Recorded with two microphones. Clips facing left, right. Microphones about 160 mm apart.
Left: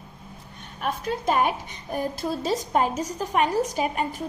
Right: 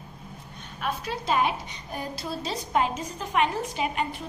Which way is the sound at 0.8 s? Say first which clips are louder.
Left 3 dB; 50° left (ahead or behind).